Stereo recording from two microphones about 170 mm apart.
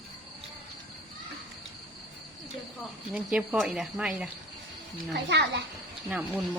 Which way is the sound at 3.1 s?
5° right (ahead or behind).